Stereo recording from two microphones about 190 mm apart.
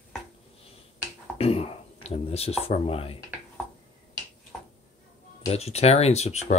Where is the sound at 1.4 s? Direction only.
30° left (ahead or behind).